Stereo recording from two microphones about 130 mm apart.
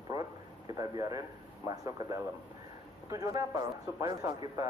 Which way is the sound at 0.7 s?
25° right (ahead or behind).